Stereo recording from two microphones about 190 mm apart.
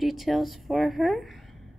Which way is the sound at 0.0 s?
Centre (ahead or behind).